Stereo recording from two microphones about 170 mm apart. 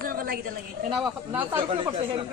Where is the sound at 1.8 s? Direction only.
30° right (ahead or behind).